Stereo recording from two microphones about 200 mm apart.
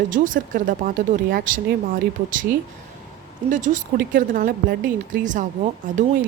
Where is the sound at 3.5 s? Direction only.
40° right (ahead or behind).